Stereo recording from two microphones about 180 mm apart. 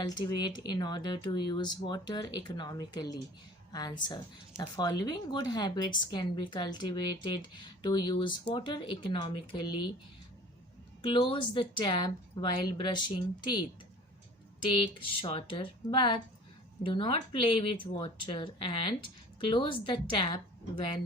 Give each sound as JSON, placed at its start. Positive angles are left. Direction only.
{"t": 0.0, "sound": "speech", "side_deg": 20}
{"t": 11.0, "sound": "speech", "side_deg": 30}
{"t": 14.7, "sound": "speech", "side_deg": 30}